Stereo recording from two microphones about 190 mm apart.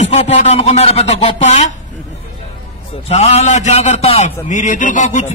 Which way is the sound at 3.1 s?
35° left (ahead or behind).